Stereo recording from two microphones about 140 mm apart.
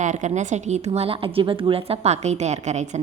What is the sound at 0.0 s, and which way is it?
A woman's voice, 60° right (ahead or behind).